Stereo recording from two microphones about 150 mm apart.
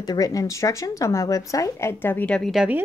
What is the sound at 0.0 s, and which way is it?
A woman's voice, 25° left (ahead or behind).